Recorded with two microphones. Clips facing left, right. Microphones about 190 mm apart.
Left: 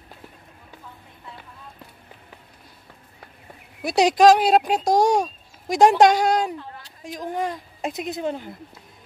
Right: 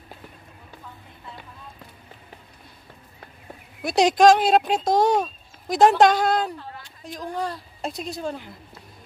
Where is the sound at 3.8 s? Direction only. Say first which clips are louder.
Left 1 dB; 10° left (ahead or behind).